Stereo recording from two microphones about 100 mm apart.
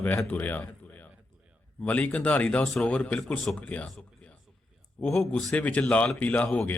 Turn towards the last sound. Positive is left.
turn(degrees=20)  # may be behind; listen again after turning